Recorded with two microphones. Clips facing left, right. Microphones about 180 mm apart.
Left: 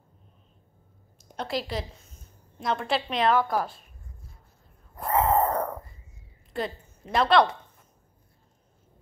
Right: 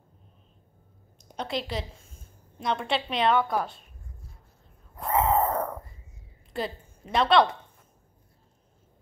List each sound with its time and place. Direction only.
1.4 s a woman's voice: centre (ahead or behind)
4.9 s a sound: centre (ahead or behind)
6.6 s a woman's voice: centre (ahead or behind)